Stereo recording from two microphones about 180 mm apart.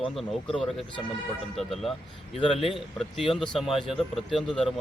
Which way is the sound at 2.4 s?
30° left (ahead or behind).